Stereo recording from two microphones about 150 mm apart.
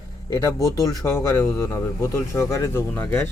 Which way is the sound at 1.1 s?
20° left (ahead or behind).